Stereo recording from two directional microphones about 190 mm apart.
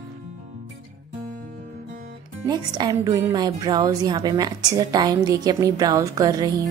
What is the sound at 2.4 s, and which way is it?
Speech, 20° right (ahead or behind).